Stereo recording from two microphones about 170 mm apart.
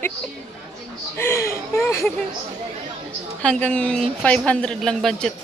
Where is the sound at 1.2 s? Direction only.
15° left (ahead or behind).